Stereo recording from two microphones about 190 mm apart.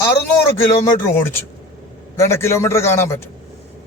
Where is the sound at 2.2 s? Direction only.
15° left (ahead or behind).